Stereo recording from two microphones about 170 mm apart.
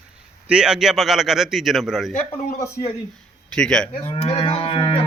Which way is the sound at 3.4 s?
5° left (ahead or behind).